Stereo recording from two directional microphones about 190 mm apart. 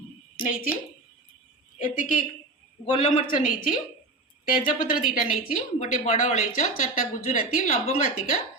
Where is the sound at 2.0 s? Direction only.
45° left (ahead or behind).